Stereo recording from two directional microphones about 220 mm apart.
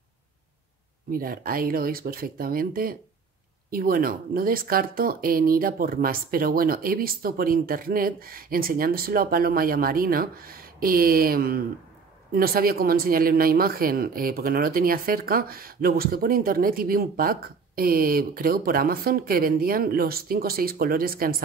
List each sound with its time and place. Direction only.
1.1 s speech: 40° right (ahead or behind)